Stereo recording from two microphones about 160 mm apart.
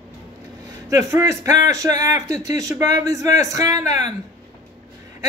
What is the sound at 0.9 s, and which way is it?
Speech, 20° right (ahead or behind).